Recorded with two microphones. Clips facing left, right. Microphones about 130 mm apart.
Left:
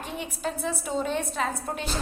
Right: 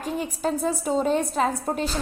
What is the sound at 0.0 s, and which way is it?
A woman's voice, 40° right (ahead or behind).